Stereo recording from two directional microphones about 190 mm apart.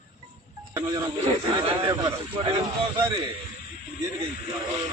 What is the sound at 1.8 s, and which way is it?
Speech, 15° right (ahead or behind).